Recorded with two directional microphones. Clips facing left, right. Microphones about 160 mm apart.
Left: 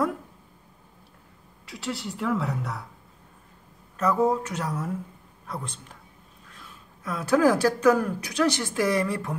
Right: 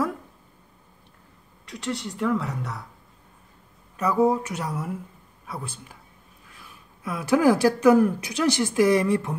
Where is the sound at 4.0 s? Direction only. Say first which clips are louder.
Right 2 dB; 10° right (ahead or behind).